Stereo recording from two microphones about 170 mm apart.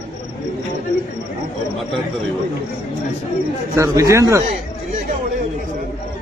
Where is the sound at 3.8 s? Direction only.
15° right (ahead or behind).